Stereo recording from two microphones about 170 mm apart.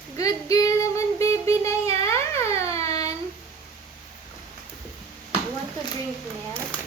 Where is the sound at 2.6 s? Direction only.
20° left (ahead or behind).